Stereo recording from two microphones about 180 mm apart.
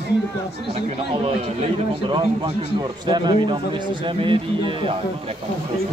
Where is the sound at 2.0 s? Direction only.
25° right (ahead or behind).